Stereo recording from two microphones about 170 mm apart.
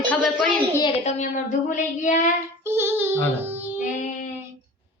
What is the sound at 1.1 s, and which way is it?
Child singing, 45° left (ahead or behind).